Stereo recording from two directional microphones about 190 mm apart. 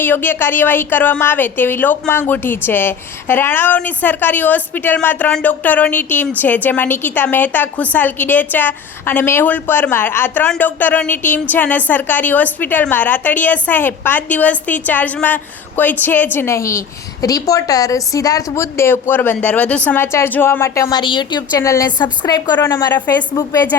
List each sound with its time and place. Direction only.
0.0 s a woman's voice: 10° left (ahead or behind)